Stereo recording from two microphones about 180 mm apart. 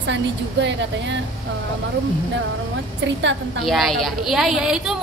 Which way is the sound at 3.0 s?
90° right.